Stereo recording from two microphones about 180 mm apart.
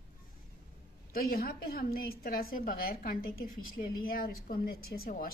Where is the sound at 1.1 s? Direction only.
55° left (ahead or behind).